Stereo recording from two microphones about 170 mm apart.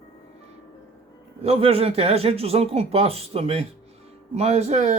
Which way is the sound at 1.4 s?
35° right (ahead or behind).